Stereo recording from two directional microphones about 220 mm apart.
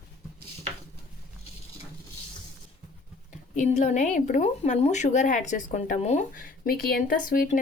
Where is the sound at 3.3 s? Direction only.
35° left (ahead or behind).